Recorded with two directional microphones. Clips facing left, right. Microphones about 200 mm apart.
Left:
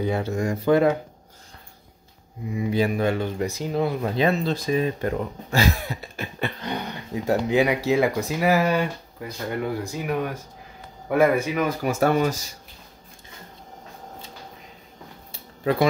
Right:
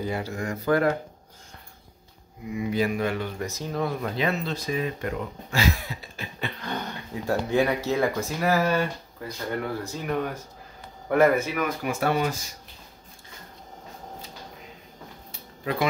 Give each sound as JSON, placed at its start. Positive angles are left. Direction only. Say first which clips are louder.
{"t": 0.2, "sound": "speech", "louder": "left 6 dB", "side_deg": 25}
{"t": 2.5, "sound": "speech", "louder": "left 2 dB", "side_deg": 30}
{"t": 3.3, "sound": "speech", "louder": "left 5 dB", "side_deg": 15}
{"t": 4.2, "sound": "speech", "louder": "left 7 dB", "side_deg": 30}
{"t": 6.6, "sound": "speech", "louder": "left 2 dB", "side_deg": 15}
{"t": 11.8, "sound": "speech", "louder": "left 5 dB", "side_deg": 40}